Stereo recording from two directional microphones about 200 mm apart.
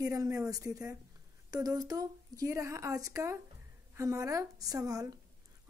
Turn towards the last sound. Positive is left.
turn(degrees=-15)  # may be behind; listen again after turning